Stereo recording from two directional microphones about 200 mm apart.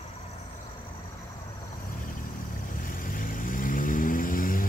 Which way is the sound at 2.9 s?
45° left (ahead or behind).